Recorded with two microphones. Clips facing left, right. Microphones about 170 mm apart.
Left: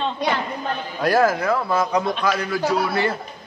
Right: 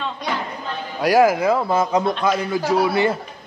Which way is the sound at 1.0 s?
15° right (ahead or behind).